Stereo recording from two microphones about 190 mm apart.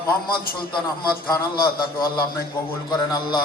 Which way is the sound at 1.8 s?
50° left (ahead or behind).